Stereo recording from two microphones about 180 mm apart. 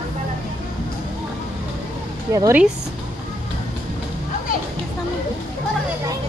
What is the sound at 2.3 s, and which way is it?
Speech, 15° right (ahead or behind).